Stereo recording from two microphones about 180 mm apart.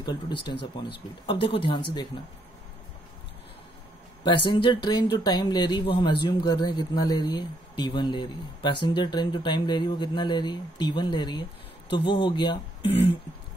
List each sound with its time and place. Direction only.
0.0 s speech: 25° left (ahead or behind)
4.2 s speech: 25° left (ahead or behind)